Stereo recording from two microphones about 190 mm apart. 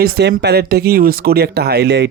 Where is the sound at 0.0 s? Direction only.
60° right (ahead or behind).